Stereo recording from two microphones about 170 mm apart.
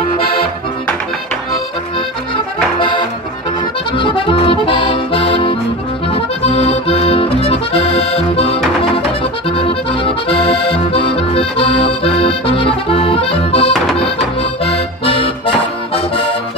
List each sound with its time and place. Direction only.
3.9 s accordion: 30° left (ahead or behind)